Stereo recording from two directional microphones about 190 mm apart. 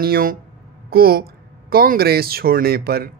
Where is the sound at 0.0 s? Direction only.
50° right (ahead or behind).